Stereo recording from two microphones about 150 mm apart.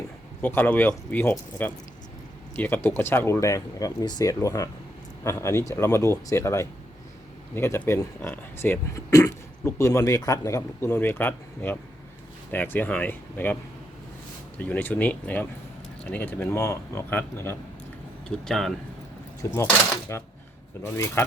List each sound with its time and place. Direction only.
0.4 s speech: 15° left (ahead or behind)
14.6 s speech: 10° left (ahead or behind)
18.3 s speech: 5° left (ahead or behind)
19.6 s a sound: 15° left (ahead or behind)
20.8 s speech: 20° left (ahead or behind)